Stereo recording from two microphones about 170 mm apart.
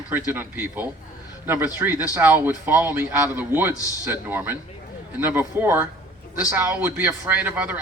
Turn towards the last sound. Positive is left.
turn(degrees=-10)  # may be behind; listen again after turning